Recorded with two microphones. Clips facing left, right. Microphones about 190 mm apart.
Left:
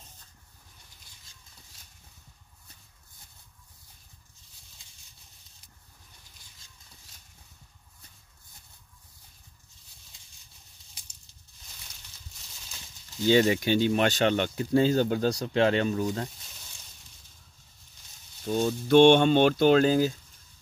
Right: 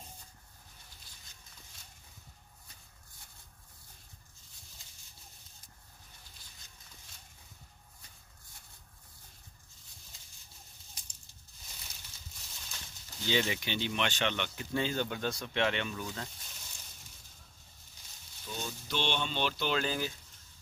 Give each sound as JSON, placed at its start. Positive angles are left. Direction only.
{"t": 13.3, "sound": "speech", "side_deg": 45}
{"t": 18.4, "sound": "speech", "side_deg": 50}